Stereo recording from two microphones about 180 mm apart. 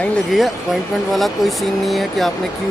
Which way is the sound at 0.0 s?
Centre (ahead or behind).